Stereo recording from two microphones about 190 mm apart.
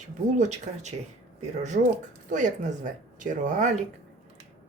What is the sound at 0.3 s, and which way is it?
Speech, 40° right (ahead or behind).